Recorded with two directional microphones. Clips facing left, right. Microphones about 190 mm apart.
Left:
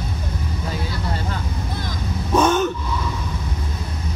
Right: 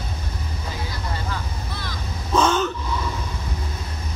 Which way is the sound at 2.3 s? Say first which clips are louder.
Left 3 dB; 20° left (ahead or behind).